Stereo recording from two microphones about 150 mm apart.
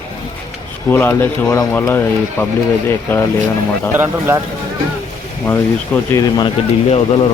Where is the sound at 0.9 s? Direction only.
15° left (ahead or behind).